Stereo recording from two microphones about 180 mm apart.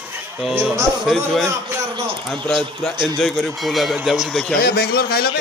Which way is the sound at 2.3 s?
Centre (ahead or behind).